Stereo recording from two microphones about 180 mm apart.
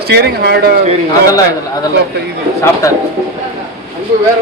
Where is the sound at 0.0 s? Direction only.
60° right (ahead or behind).